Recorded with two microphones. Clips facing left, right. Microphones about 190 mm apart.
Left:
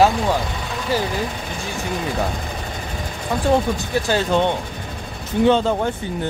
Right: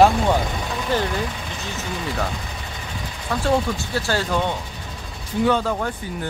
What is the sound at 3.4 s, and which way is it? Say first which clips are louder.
Speech: left 3 dB; 15° left (ahead or behind).